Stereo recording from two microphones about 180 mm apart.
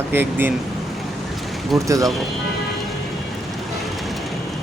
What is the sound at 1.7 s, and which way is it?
Speech, centre (ahead or behind).